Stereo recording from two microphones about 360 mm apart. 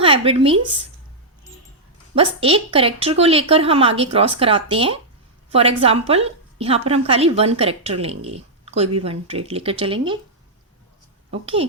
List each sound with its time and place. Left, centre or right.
0.0 s speech: centre
2.1 s a woman's voice: centre
11.3 s a woman's voice: centre